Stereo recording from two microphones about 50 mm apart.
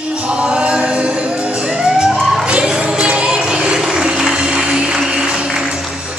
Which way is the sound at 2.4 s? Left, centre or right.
Centre.